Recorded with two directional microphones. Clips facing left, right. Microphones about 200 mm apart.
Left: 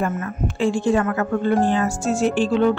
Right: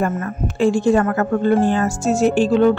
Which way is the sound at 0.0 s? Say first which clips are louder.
Right 2 dB; 45° right (ahead or behind).